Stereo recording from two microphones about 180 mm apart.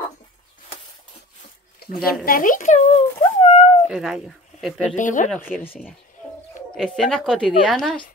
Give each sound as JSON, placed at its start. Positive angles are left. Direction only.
{"t": 2.0, "sound": "a child's voice", "side_deg": 55}
{"t": 3.2, "sound": "a sound", "side_deg": 35}
{"t": 3.9, "sound": "speech", "side_deg": 0}
{"t": 4.9, "sound": "a child's voice", "side_deg": 45}
{"t": 5.7, "sound": "a woman's voice", "side_deg": -5}